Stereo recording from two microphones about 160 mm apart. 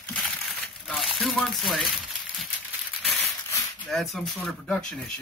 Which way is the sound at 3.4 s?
15° left (ahead or behind).